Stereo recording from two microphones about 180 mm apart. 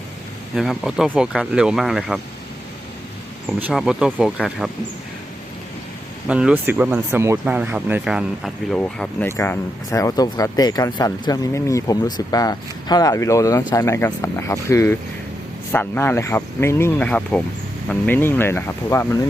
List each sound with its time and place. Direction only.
0.5 s speech: centre (ahead or behind)
3.6 s speech: 5° right (ahead or behind)
6.2 s speech: 5° right (ahead or behind); by 19.2 s 15° left (ahead or behind)